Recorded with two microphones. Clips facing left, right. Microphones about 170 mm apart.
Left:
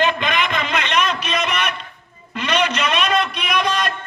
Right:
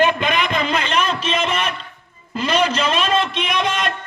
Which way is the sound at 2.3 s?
30° right (ahead or behind).